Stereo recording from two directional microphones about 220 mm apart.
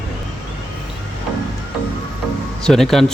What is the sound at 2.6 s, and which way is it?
Speech, centre (ahead or behind).